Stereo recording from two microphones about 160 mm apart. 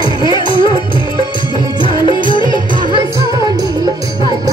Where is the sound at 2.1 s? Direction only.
30° left (ahead or behind).